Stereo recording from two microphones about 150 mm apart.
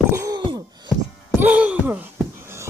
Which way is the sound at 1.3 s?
10° right (ahead or behind).